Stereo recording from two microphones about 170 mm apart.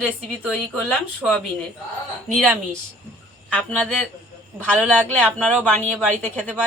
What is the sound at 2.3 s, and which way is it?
Speech, centre (ahead or behind).